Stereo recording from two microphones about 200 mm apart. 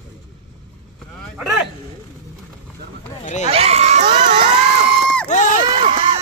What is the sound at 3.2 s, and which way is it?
Speech, 35° left (ahead or behind).